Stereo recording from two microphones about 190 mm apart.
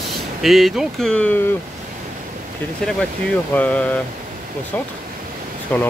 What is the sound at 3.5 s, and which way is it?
Speech, 5° left (ahead or behind).